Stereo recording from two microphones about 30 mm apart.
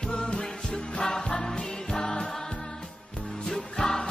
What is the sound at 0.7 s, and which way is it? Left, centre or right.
Music, centre.